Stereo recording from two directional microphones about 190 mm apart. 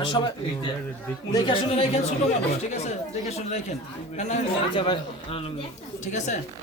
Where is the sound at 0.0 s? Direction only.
25° left (ahead or behind).